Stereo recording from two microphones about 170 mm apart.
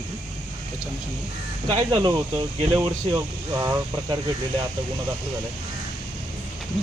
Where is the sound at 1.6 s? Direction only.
30° right (ahead or behind).